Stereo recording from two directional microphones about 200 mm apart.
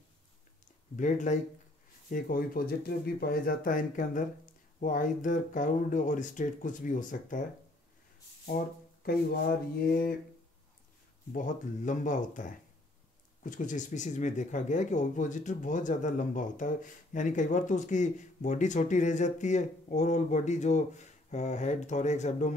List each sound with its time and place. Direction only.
0.9 s speech: 35° left (ahead or behind)
8.5 s speech: 45° left (ahead or behind)
11.3 s speech: 40° left (ahead or behind)